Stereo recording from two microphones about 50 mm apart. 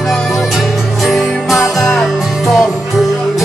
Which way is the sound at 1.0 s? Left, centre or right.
Centre.